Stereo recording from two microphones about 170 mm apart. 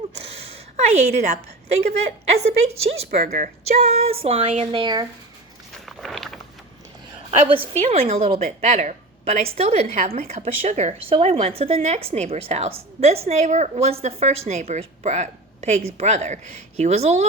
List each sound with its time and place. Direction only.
0.1 s a woman's voice: 35° right (ahead or behind)
5.7 s a sound: centre (ahead or behind)
7.3 s a woman's voice: 30° right (ahead or behind)